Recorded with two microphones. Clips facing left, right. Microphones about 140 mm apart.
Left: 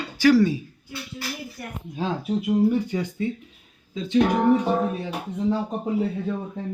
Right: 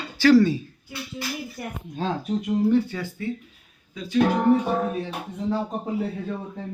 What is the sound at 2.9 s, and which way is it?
Speech, 20° left (ahead or behind).